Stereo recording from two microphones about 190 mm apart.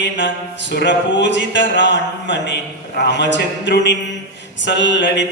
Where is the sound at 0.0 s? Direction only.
70° left (ahead or behind).